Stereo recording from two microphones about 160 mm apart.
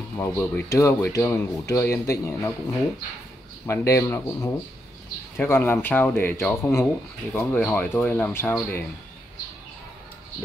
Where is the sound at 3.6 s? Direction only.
15° left (ahead or behind).